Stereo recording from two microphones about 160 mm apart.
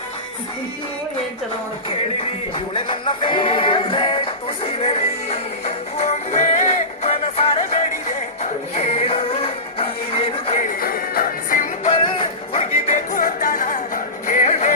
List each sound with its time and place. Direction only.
2.7 s music: 30° left (ahead or behind)
10.6 s music: 65° left (ahead or behind)
11.9 s music: 35° left (ahead or behind)
12.5 s music: 50° left (ahead or behind)